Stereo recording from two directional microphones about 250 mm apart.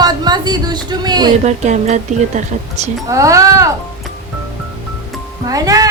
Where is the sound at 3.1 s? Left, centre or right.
Centre.